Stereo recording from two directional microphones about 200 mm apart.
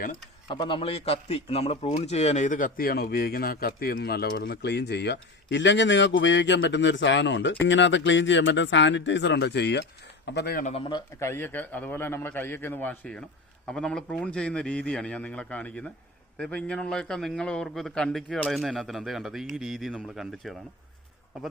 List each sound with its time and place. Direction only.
0.5 s a man's voice: 25° left (ahead or behind); by 10.7 s 50° left (ahead or behind)
10.7 s a man's voice: 25° left (ahead or behind); by 20.6 s centre (ahead or behind)